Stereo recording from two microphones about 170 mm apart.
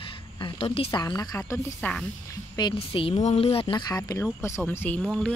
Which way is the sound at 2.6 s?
30° left (ahead or behind).